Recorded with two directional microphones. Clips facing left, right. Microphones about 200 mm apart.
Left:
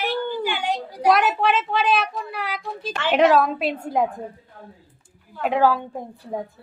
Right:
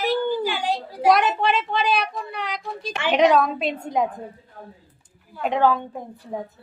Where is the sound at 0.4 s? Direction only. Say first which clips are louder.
Even; 35° right (ahead or behind).